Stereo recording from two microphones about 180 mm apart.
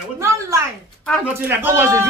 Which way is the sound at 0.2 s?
15° right (ahead or behind).